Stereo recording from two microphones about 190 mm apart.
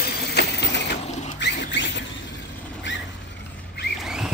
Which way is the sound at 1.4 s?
65° left (ahead or behind).